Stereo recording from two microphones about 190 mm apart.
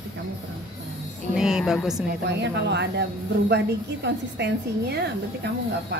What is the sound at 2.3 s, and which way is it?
Speech, 65° right (ahead or behind).